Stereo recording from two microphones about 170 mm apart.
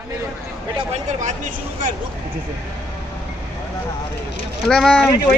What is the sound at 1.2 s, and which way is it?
Speech, 45° right (ahead or behind).